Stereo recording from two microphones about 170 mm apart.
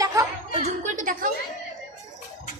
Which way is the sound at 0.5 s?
45° right (ahead or behind).